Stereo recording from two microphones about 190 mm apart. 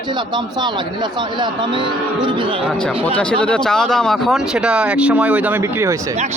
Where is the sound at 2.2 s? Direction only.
25° right (ahead or behind).